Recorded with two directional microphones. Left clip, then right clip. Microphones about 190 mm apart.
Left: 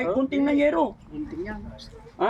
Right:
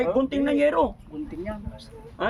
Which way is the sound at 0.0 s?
25° right (ahead or behind).